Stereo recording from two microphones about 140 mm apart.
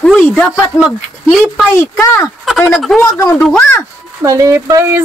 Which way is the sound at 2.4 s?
5° left (ahead or behind).